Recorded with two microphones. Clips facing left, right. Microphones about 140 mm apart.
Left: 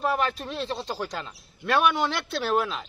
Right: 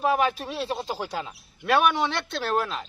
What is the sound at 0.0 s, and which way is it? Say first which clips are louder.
Speech: right 3 dB; 10° right (ahead or behind).